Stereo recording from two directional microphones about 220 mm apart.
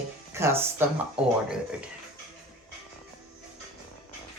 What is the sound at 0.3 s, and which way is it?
Speech, 10° right (ahead or behind).